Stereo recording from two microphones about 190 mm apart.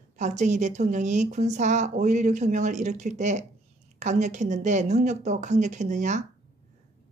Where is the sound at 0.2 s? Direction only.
40° right (ahead or behind).